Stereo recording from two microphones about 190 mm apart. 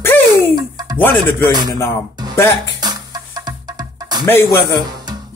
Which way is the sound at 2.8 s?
20° right (ahead or behind).